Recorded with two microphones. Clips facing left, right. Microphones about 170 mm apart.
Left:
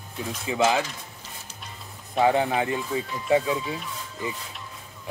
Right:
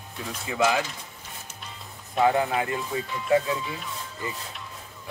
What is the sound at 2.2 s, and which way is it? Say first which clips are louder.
Speech: left 1 dB; 25° left (ahead or behind).